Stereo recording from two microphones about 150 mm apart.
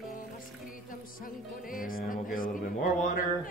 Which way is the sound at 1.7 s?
70° left (ahead or behind).